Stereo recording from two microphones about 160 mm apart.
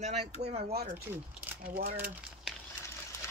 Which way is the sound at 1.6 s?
65° right (ahead or behind).